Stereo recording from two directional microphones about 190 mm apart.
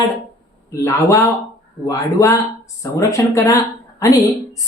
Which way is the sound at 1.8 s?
15° left (ahead or behind).